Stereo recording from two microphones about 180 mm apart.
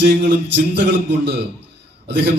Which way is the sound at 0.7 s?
75° right (ahead or behind).